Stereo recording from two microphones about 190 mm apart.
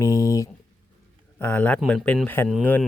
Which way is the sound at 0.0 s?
15° left (ahead or behind).